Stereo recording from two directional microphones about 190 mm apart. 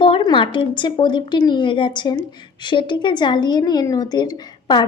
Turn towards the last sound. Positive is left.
turn(degrees=25)  # may be behind; listen again after turning